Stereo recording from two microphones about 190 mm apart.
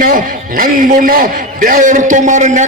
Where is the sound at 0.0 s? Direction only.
50° right (ahead or behind).